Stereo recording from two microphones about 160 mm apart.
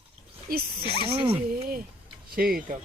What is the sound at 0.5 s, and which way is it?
Speech, 65° right (ahead or behind).